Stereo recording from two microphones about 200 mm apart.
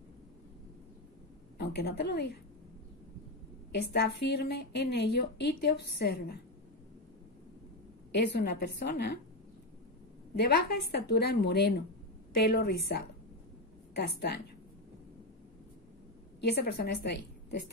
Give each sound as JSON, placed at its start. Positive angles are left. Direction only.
{"t": 1.6, "sound": "a woman's voice", "side_deg": 55}
{"t": 3.7, "sound": "a woman's voice", "side_deg": 50}
{"t": 8.3, "sound": "a woman's voice", "side_deg": 55}
{"t": 10.3, "sound": "a woman's voice", "side_deg": 55}
{"t": 13.9, "sound": "a woman's voice", "side_deg": 55}
{"t": 16.3, "sound": "a woman's voice", "side_deg": 55}